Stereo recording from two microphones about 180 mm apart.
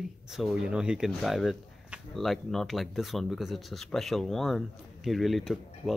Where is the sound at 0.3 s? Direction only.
Centre (ahead or behind).